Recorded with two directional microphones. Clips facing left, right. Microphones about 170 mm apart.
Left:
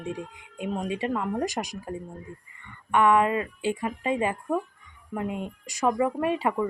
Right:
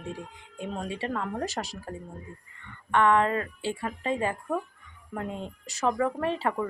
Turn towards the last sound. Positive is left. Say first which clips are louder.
# left 3 dB
turn(degrees=15)  # may be behind; listen again after turning